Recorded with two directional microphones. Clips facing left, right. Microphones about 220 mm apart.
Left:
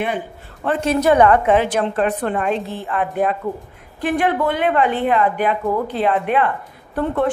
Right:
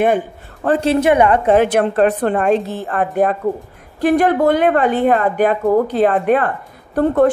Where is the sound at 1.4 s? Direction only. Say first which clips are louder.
Right 4 dB; 40° right (ahead or behind).